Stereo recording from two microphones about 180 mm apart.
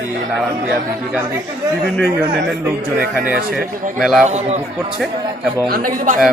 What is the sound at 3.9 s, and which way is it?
Speech, centre (ahead or behind).